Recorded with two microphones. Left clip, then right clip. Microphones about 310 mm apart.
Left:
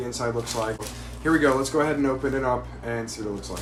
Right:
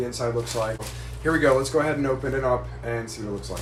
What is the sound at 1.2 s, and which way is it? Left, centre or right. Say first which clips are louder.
Speech: right 1 dB; centre.